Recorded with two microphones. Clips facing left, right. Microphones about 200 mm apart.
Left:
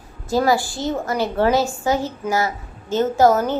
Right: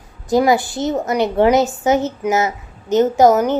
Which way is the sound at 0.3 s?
20° right (ahead or behind).